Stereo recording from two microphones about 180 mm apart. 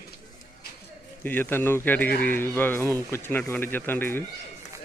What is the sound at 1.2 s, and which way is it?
Speech, 10° left (ahead or behind).